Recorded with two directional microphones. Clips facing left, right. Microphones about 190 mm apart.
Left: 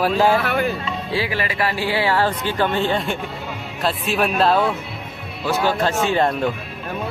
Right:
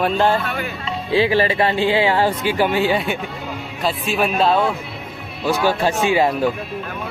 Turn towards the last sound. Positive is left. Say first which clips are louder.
# right 2 dB
turn(degrees=-5)  # may be behind; listen again after turning